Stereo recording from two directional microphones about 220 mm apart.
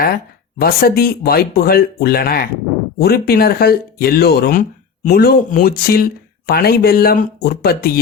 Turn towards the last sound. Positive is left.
turn(degrees=45)  # may be behind; listen again after turning